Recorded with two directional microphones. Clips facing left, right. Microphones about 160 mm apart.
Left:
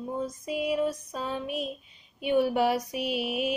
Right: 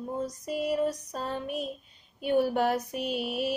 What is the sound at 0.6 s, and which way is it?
Speech, 5° left (ahead or behind).